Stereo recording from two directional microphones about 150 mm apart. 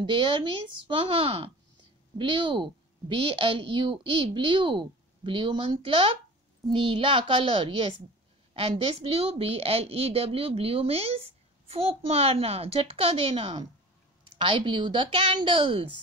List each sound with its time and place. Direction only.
0.0 s a woman's voice: 35° right (ahead or behind)